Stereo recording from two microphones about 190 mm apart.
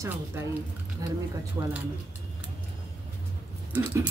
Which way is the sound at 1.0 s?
20° right (ahead or behind).